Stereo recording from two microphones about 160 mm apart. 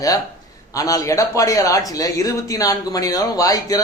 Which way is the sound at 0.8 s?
20° left (ahead or behind).